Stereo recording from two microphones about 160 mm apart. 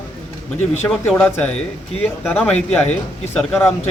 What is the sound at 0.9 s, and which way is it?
A man's voice, 5° left (ahead or behind).